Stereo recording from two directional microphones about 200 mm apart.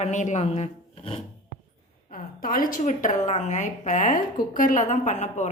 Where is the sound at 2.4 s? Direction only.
45° left (ahead or behind).